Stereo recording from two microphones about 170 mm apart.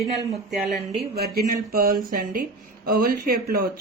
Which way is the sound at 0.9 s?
65° right (ahead or behind).